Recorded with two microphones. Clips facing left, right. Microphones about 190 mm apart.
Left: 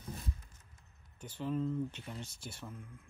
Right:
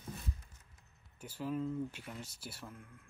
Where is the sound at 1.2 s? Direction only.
5° right (ahead or behind).